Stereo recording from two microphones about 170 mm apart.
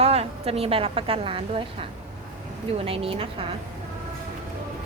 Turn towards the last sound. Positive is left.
turn(degrees=-35)  # may be behind; listen again after turning